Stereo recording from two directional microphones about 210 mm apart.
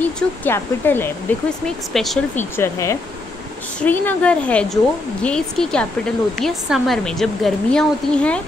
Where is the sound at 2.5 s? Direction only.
15° left (ahead or behind).